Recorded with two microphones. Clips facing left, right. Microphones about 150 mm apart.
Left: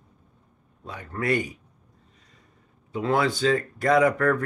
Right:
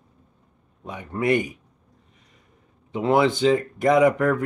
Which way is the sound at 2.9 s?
20° right (ahead or behind).